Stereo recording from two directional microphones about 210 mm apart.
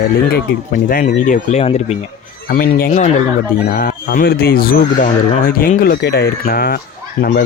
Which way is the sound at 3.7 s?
45° left (ahead or behind).